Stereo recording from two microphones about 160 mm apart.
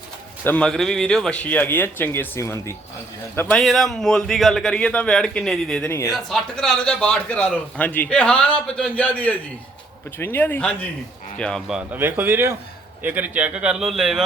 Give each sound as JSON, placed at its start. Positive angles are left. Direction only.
{"t": 0.4, "sound": "a man's voice", "side_deg": 5}
{"t": 11.8, "sound": "a man's voice", "side_deg": -10}